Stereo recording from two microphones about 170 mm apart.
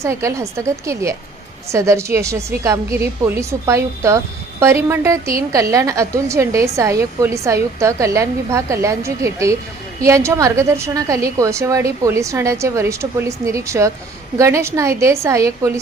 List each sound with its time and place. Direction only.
0.0 s a woman's voice: 15° right (ahead or behind)